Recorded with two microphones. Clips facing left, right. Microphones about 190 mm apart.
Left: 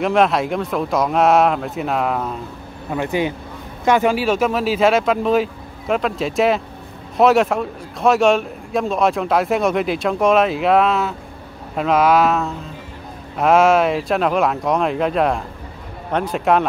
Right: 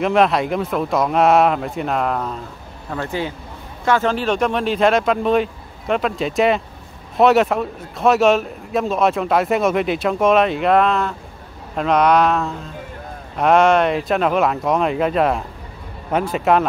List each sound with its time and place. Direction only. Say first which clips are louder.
0.0 s a man's voice: even; centre (ahead or behind)
2.9 s a man's voice: left 4 dB; 15° left (ahead or behind); by 16.6 s centre (ahead or behind)